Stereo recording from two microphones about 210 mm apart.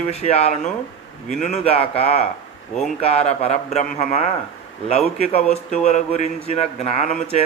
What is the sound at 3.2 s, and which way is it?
Speech, 30° left (ahead or behind).